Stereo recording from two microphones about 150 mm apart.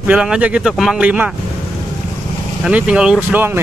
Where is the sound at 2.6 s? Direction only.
5° right (ahead or behind).